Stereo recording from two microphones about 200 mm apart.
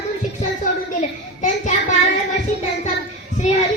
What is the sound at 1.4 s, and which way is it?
Child singing, 35° left (ahead or behind).